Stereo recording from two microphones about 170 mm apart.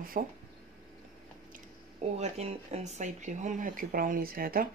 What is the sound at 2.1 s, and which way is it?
Speech, 40° right (ahead or behind).